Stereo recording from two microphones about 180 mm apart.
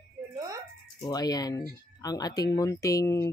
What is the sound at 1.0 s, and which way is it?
Speech, 20° left (ahead or behind).